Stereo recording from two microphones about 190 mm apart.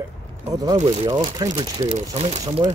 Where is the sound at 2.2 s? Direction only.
35° right (ahead or behind).